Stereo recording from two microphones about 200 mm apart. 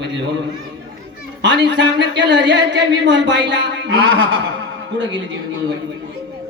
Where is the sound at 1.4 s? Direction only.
60° right (ahead or behind).